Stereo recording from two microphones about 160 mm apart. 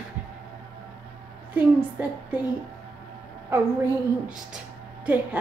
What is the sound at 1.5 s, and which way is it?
Speech, 10° right (ahead or behind).